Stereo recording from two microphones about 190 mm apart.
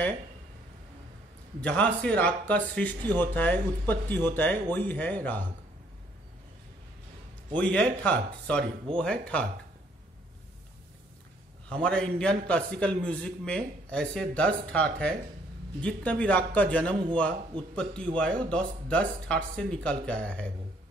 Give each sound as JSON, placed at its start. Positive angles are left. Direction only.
{"t": 1.6, "sound": "speech", "side_deg": 5}
{"t": 3.0, "sound": "speech", "side_deg": -20}
{"t": 3.3, "sound": "speech", "side_deg": 10}
{"t": 7.7, "sound": "a man's voice", "side_deg": 5}
{"t": 11.7, "sound": "a man's voice", "side_deg": 5}